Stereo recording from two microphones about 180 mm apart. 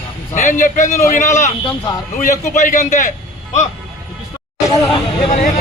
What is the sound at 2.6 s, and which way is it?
Speech, 45° left (ahead or behind).